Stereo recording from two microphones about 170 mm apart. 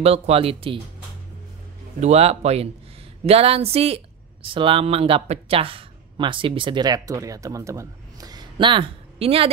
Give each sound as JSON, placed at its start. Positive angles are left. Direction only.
{"t": 0.0, "sound": "speech", "side_deg": -35}
{"t": 2.0, "sound": "speech", "side_deg": -40}